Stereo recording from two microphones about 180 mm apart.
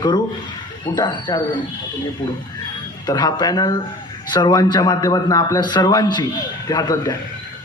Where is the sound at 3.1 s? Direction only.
20° left (ahead or behind).